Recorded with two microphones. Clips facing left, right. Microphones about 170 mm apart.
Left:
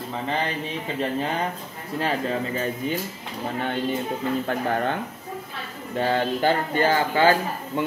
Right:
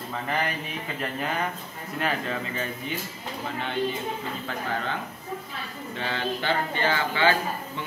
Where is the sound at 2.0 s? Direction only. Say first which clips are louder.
Left 4 dB; 35° left (ahead or behind).